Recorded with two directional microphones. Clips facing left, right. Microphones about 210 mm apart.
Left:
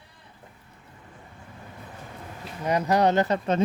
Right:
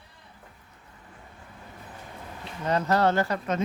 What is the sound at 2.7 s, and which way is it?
Speech, 15° left (ahead or behind).